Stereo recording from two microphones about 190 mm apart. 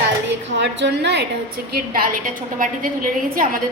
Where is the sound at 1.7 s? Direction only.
50° right (ahead or behind).